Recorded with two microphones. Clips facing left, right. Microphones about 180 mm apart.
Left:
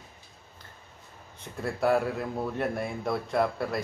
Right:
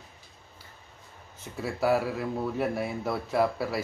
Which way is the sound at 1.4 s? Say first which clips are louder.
Left 1 dB; 5° right (ahead or behind).